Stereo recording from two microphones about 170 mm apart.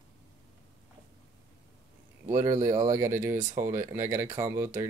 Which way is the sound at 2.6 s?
15° right (ahead or behind).